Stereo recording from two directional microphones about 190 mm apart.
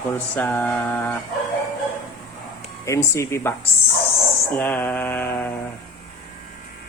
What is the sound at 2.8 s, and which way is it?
Speech, 15° left (ahead or behind).